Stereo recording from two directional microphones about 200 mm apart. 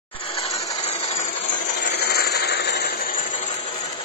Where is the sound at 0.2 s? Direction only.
30° left (ahead or behind).